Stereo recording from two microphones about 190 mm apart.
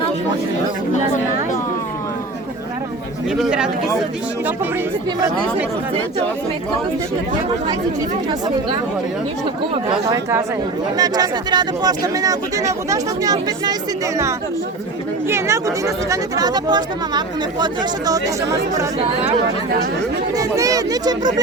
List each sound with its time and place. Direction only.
3.3 s speech: 5° right (ahead or behind)
10.9 s speech: 20° right (ahead or behind)
15.3 s speech: 15° right (ahead or behind)
20.3 s speech: 20° right (ahead or behind)